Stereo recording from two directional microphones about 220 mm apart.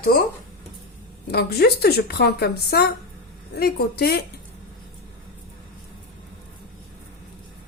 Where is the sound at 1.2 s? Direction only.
45° left (ahead or behind).